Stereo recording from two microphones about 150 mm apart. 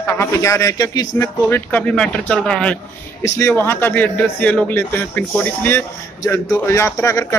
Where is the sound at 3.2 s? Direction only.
20° left (ahead or behind).